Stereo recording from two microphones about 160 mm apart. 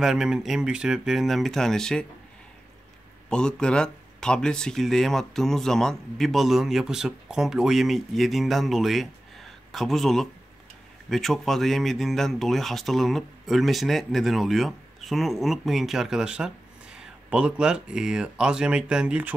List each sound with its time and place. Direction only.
0.0 s speech: 5° right (ahead or behind)
3.3 s speech: 5° left (ahead or behind)